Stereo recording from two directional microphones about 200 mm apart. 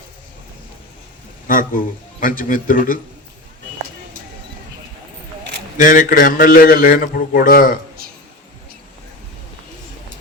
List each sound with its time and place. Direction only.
1.5 s a sound: 45° left (ahead or behind)
2.2 s a man's voice: 45° left (ahead or behind)
5.7 s a man's voice: 40° left (ahead or behind)